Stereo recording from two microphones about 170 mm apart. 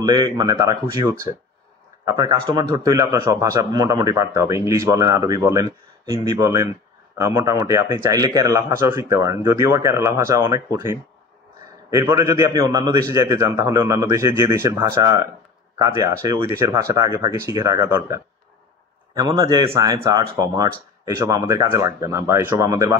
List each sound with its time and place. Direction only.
0.0 s a man's voice: 25° right (ahead or behind)